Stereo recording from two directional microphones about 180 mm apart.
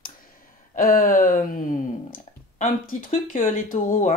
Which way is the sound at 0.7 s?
50° left (ahead or behind).